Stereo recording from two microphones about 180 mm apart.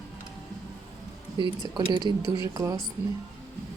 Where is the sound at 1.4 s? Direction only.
25° right (ahead or behind).